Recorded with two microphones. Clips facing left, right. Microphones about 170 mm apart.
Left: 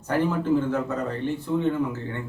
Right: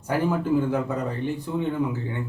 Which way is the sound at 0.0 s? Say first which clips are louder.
Even; 10° right (ahead or behind).